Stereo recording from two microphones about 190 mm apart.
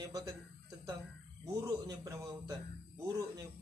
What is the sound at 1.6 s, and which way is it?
Speech, 15° right (ahead or behind).